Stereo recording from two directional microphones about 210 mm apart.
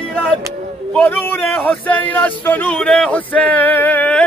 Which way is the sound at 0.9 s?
5° left (ahead or behind).